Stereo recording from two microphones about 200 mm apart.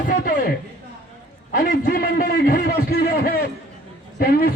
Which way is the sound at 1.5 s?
45° left (ahead or behind).